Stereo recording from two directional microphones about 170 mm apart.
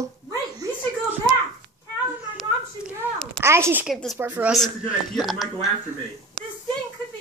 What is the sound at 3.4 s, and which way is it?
Speech, 15° right (ahead or behind).